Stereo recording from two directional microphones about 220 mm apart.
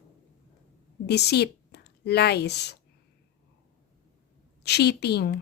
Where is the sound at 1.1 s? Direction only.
50° left (ahead or behind).